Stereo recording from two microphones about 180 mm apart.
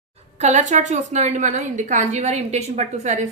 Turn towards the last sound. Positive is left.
turn(degrees=-40)  # may be behind; listen again after turning